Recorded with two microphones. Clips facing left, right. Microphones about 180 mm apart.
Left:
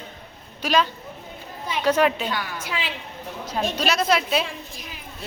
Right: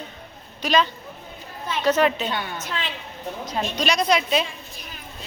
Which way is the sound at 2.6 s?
10° left (ahead or behind).